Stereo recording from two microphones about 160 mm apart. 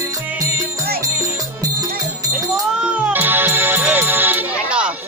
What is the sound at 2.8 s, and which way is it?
Music, 10° right (ahead or behind).